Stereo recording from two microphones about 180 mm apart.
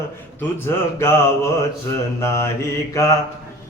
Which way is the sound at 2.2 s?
15° left (ahead or behind).